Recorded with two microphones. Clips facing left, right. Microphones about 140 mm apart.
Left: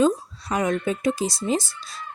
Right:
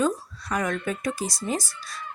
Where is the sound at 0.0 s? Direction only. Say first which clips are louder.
Left 5 dB; 25° left (ahead or behind).